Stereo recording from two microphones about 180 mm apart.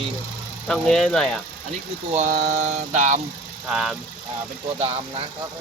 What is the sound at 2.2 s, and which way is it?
Mantra, 40° right (ahead or behind).